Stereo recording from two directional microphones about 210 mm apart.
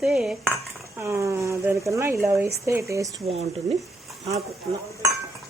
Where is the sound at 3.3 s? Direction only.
30° right (ahead or behind).